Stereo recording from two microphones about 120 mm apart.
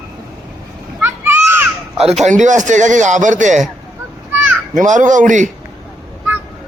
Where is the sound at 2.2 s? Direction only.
90° right.